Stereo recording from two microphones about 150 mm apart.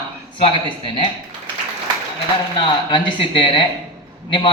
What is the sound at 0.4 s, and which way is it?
Speech, 35° left (ahead or behind).